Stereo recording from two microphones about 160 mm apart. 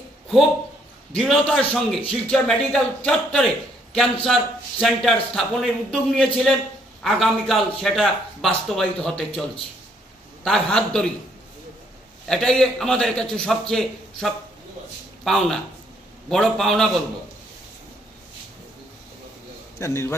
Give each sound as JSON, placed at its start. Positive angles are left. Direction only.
{"t": 1.1, "sound": "a man's voice", "side_deg": 0}
{"t": 10.4, "sound": "a man's voice", "side_deg": 5}
{"t": 12.3, "sound": "a man's voice", "side_deg": 5}
{"t": 19.8, "sound": "a man's voice", "side_deg": 15}